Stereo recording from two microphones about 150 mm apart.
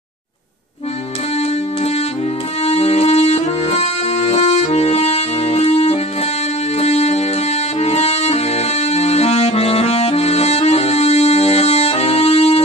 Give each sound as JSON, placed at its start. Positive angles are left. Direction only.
{"t": 2.6, "sound": "accordion", "side_deg": 45}
{"t": 6.8, "sound": "music", "side_deg": 45}